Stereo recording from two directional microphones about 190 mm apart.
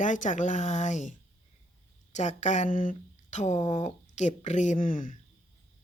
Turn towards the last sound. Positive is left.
turn(degrees=45)  # may be behind; listen again after turning